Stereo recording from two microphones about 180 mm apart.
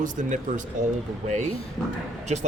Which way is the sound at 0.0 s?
45° right (ahead or behind).